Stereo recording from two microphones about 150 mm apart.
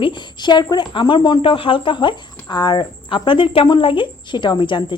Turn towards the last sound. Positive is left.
turn(degrees=30)  # may be behind; listen again after turning